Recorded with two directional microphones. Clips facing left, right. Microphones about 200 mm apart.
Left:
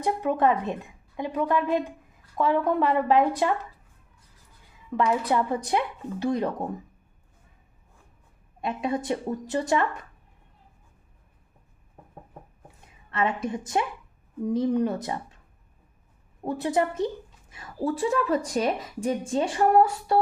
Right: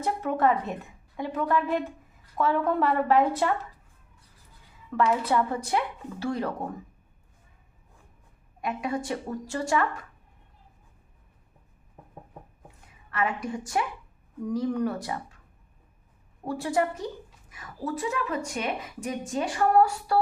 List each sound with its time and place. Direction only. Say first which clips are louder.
0.0 s a woman's voice: left 2 dB; 15° left (ahead or behind)
4.9 s a woman's voice: left 1 dB; 15° left (ahead or behind)
8.6 s a woman's voice: left 2 dB; 25° left (ahead or behind)
13.1 s a woman's voice: left 2 dB; 25° left (ahead or behind)
16.5 s a woman's voice: left 2 dB; 20° left (ahead or behind)